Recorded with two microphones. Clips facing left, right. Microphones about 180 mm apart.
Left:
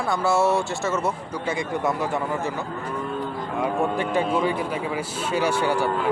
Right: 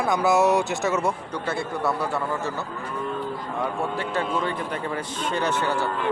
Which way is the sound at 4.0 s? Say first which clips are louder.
Left 2 dB; 15° left (ahead or behind).